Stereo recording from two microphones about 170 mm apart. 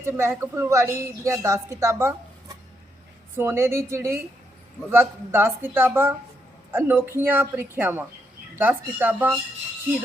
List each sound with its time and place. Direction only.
0.0 s a woman's voice: 15° right (ahead or behind)
3.3 s a woman's voice: 15° right (ahead or behind)